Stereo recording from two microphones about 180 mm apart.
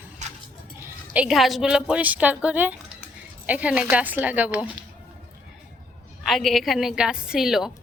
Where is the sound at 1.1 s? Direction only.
5° right (ahead or behind).